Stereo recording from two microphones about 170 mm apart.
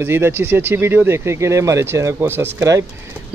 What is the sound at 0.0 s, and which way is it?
Speech, 15° right (ahead or behind).